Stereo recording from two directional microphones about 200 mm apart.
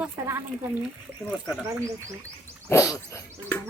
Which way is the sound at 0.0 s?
10° right (ahead or behind).